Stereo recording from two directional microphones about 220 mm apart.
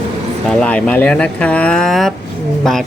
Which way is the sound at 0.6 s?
5° left (ahead or behind).